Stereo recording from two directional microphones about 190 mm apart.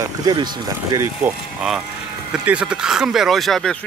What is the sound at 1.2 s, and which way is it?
Speech, 5° right (ahead or behind).